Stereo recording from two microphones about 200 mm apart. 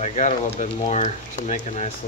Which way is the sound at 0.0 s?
40° left (ahead or behind).